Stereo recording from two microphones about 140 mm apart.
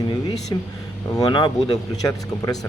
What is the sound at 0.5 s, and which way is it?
Speech, 25° left (ahead or behind).